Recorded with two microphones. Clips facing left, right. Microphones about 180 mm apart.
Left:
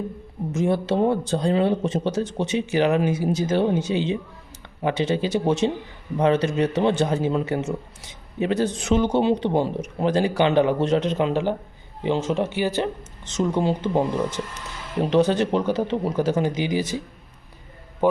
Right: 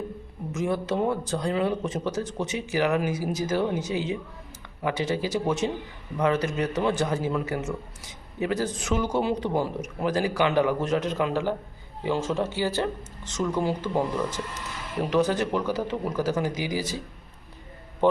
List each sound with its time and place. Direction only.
0.5 s speech: 30° left (ahead or behind)
18.0 s a man's voice: 10° left (ahead or behind)